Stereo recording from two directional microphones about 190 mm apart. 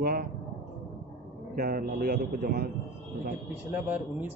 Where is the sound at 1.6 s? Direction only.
50° right (ahead or behind).